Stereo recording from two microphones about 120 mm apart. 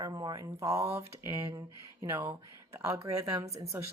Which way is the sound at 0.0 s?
35° right (ahead or behind).